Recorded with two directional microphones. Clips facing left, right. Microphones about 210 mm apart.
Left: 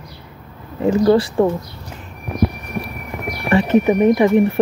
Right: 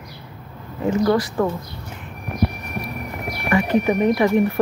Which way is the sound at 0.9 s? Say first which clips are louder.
Left 5 dB; 30° left (ahead or behind).